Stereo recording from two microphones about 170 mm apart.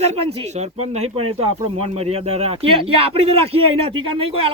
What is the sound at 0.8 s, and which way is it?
A man's voice, 40° right (ahead or behind).